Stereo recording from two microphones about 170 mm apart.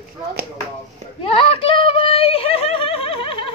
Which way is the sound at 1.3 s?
30° left (ahead or behind).